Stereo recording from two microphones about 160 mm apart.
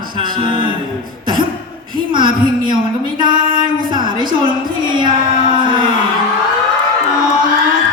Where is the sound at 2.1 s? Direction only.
30° right (ahead or behind).